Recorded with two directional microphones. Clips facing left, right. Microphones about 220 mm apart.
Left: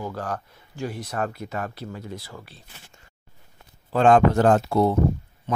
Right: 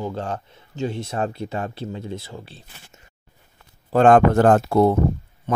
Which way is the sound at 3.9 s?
50° right (ahead or behind).